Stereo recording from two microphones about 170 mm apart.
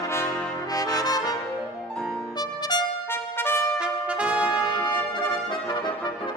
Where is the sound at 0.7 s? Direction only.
20° left (ahead or behind).